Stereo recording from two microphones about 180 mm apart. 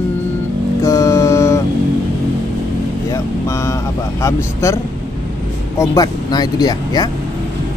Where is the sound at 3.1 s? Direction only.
15° left (ahead or behind).